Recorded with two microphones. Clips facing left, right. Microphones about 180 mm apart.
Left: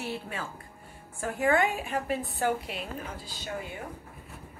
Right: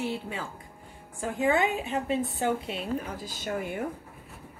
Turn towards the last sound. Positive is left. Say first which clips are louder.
# right 5 dB
turn(degrees=-45)  # may be behind; listen again after turning